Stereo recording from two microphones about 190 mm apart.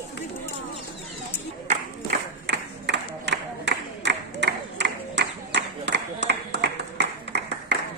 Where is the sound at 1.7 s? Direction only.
55° right (ahead or behind).